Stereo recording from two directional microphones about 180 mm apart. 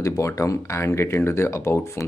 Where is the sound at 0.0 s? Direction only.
15° left (ahead or behind).